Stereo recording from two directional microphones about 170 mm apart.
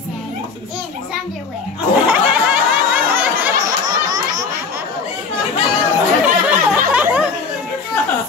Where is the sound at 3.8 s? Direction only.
20° right (ahead or behind).